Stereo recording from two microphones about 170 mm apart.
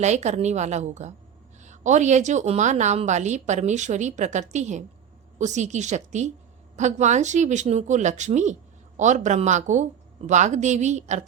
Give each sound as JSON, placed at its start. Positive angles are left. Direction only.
{"t": 0.0, "sound": "a woman's voice", "side_deg": -40}